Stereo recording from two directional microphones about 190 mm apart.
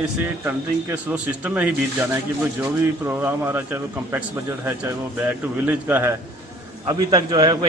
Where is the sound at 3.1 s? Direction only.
10° right (ahead or behind).